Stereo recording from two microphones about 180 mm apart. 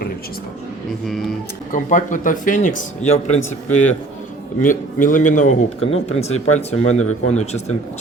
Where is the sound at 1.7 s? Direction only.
45° left (ahead or behind).